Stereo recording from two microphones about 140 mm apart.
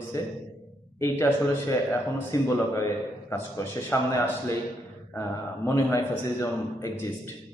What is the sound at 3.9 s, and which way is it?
Speech, 15° left (ahead or behind).